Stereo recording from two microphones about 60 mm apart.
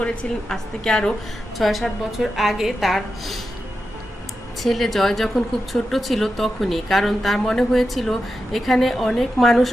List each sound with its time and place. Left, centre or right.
0.0 s a woman's voice: centre
1.5 s speech: centre
4.6 s speech: centre